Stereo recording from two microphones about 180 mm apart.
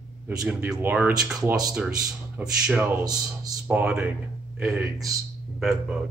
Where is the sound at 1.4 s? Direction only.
20° right (ahead or behind).